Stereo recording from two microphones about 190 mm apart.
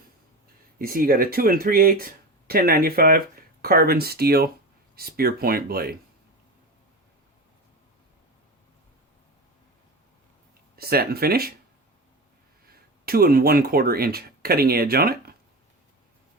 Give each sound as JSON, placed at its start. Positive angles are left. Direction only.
{"t": 0.8, "sound": "speech", "side_deg": -50}
{"t": 10.8, "sound": "speech", "side_deg": -55}
{"t": 12.7, "sound": "speech", "side_deg": -50}